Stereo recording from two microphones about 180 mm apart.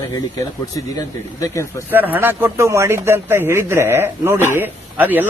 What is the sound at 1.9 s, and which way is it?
Speech, 10° right (ahead or behind).